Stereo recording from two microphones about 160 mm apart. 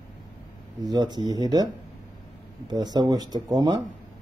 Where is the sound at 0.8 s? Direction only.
25° right (ahead or behind).